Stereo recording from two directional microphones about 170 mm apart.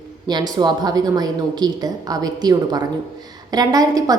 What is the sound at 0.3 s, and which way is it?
A woman's voice, 25° right (ahead or behind).